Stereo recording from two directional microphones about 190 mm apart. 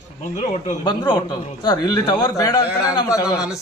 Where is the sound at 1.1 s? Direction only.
20° left (ahead or behind).